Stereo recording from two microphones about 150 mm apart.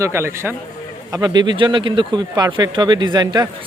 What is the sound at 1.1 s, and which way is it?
Speech, 25° right (ahead or behind).